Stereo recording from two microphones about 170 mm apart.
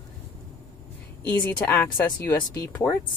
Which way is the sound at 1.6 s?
10° left (ahead or behind).